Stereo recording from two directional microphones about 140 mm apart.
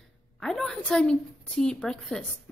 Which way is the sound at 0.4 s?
5° left (ahead or behind).